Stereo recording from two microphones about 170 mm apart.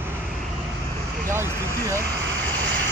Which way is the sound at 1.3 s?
15° right (ahead or behind).